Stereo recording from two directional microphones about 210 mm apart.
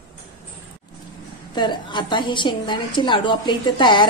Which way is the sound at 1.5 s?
20° left (ahead or behind).